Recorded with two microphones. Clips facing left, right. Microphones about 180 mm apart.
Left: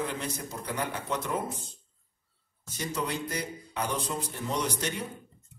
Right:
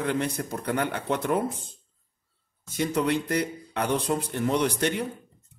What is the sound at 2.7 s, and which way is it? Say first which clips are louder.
Speech: right 8 dB; 60° right (ahead or behind).